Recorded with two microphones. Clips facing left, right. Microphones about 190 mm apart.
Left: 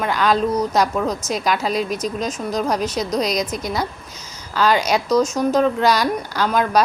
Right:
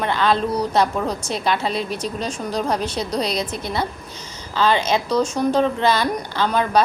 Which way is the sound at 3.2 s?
30° right (ahead or behind).